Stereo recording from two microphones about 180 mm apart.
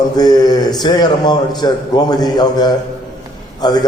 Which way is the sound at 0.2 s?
25° left (ahead or behind).